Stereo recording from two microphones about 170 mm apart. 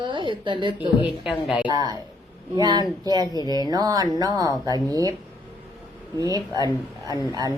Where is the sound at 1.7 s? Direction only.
25° right (ahead or behind).